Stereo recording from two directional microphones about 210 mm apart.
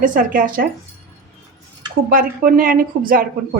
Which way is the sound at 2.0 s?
40° right (ahead or behind).